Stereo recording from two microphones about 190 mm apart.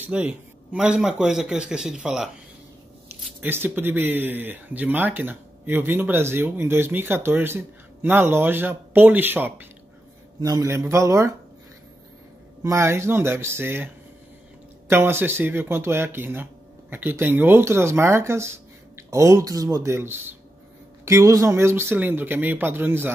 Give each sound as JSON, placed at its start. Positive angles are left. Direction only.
{"t": 0.0, "sound": "a man's voice", "side_deg": -5}
{"t": 3.3, "sound": "speech", "side_deg": -10}
{"t": 12.6, "sound": "speech", "side_deg": -15}
{"t": 14.9, "sound": "speech", "side_deg": -10}